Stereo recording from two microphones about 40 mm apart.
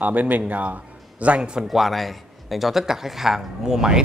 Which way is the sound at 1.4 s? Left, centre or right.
Right.